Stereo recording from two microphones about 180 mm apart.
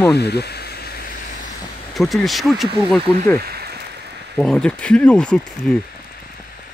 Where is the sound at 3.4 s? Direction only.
60° right (ahead or behind).